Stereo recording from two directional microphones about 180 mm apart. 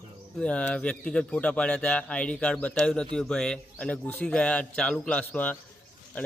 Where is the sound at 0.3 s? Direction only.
5° left (ahead or behind).